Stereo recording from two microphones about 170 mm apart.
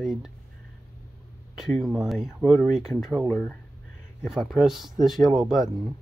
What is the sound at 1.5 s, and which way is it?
Speech, centre (ahead or behind).